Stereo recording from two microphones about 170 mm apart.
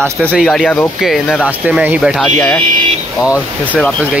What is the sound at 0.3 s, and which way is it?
Speech, 5° left (ahead or behind).